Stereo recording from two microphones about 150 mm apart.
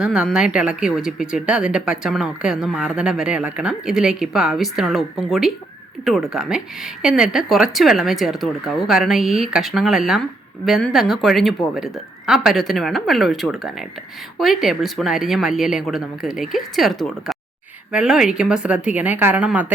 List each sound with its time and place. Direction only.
0.0 s speech: 5° right (ahead or behind)
6.1 s a woman's voice: centre (ahead or behind)